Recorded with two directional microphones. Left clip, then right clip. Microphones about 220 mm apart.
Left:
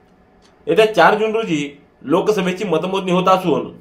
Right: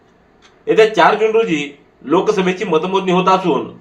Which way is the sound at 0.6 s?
45° left (ahead or behind).